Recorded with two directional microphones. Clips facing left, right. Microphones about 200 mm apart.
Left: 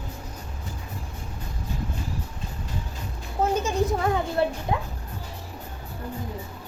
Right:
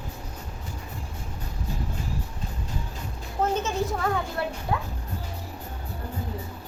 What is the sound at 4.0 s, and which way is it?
Music, 20° left (ahead or behind).